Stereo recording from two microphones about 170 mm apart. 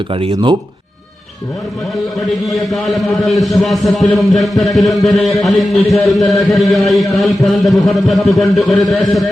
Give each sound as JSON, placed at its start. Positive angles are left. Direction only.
{"t": 0.1, "sound": "speech", "side_deg": -35}
{"t": 2.5, "sound": "a man's voice", "side_deg": 0}